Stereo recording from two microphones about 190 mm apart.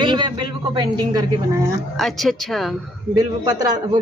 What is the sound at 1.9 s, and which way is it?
Speech, centre (ahead or behind).